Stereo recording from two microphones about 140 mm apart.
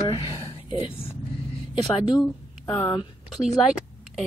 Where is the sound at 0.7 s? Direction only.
40° left (ahead or behind).